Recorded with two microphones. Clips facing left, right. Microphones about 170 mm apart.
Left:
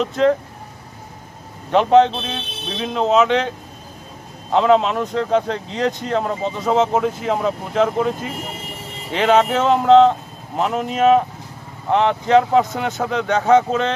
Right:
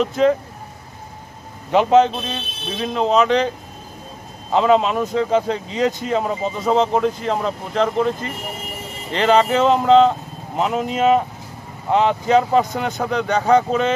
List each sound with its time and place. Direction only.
0.0 s speech: centre (ahead or behind)
1.7 s speech: 5° right (ahead or behind)